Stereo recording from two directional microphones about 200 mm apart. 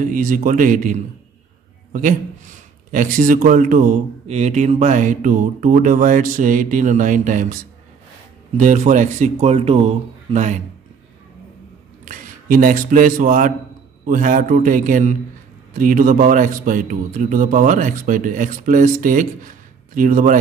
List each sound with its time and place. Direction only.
0.0 s a man's voice: 40° right (ahead or behind)
8.5 s a man's voice: 40° right (ahead or behind)
12.0 s a man's voice: 45° right (ahead or behind)